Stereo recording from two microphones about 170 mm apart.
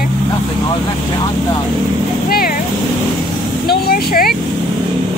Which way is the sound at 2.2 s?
60° left (ahead or behind).